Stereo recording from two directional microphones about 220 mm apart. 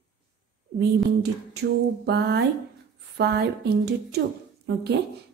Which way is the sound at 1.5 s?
50° right (ahead or behind).